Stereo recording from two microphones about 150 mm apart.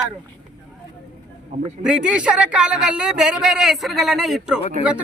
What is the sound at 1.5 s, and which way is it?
Speech, 50° right (ahead or behind).